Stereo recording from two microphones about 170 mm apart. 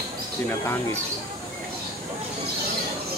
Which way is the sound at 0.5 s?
15° left (ahead or behind).